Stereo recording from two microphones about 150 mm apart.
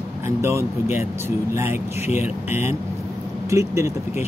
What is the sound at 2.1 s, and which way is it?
Speech, 50° left (ahead or behind).